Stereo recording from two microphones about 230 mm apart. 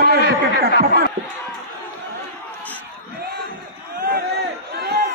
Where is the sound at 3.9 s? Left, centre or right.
Right.